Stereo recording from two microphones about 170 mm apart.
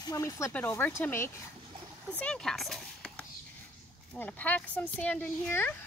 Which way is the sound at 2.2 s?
5° left (ahead or behind).